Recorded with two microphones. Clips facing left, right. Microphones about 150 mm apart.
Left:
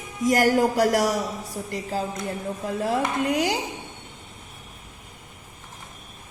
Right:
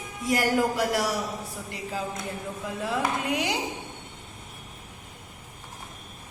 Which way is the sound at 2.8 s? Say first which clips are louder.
Left 3 dB; 40° left (ahead or behind).